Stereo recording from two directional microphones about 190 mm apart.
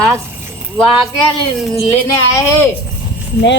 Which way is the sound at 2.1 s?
15° left (ahead or behind).